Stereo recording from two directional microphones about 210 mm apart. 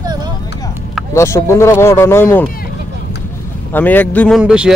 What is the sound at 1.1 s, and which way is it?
Speech, 15° left (ahead or behind).